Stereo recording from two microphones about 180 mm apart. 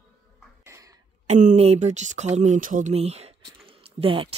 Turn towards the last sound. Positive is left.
turn(degrees=-30)  # may be behind; listen again after turning